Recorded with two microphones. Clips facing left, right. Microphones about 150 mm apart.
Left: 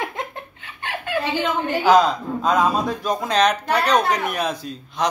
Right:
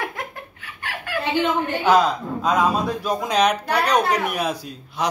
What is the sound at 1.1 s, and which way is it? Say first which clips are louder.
Chuckle: left 3 dB; 20° left (ahead or behind).